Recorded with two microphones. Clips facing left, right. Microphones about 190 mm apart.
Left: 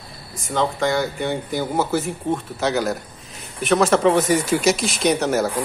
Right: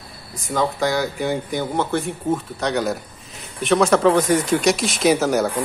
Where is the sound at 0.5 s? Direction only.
Centre (ahead or behind).